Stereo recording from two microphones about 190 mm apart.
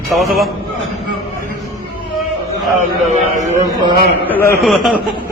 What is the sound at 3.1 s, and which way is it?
Speech, 40° right (ahead or behind).